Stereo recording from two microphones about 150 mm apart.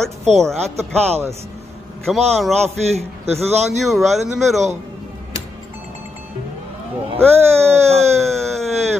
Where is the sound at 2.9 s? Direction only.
45° right (ahead or behind).